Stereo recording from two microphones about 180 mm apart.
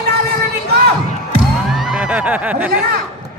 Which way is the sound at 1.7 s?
5° right (ahead or behind).